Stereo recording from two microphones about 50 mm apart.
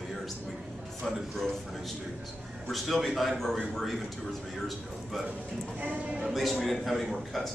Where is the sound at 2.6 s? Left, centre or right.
Centre.